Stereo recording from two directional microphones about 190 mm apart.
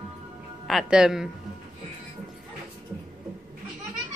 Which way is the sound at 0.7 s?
Centre (ahead or behind).